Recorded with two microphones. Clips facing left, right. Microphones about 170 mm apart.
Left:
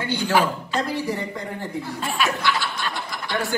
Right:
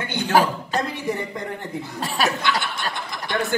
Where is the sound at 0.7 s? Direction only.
20° right (ahead or behind).